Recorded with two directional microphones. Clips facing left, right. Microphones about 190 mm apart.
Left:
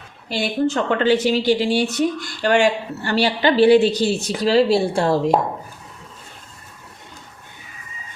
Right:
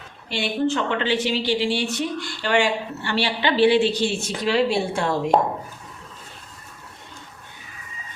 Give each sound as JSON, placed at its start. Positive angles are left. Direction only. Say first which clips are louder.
{"t": 0.3, "sound": "a woman's voice", "louder": "left 2 dB", "side_deg": 40}